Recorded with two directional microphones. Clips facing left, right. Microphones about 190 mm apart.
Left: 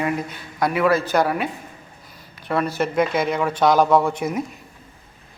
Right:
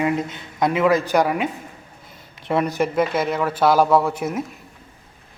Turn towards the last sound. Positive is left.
turn(degrees=-5)  # may be behind; listen again after turning